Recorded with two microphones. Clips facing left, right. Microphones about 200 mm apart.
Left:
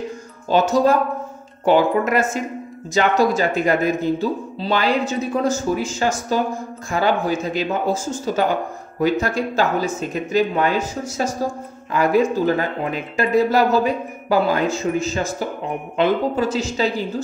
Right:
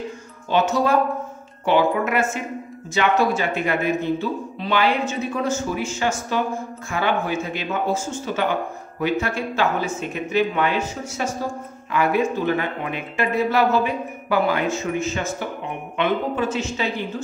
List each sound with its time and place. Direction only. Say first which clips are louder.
0.5 s speech: left 3 dB; 40° left (ahead or behind)
11.9 s speech: left 3 dB; 40° left (ahead or behind)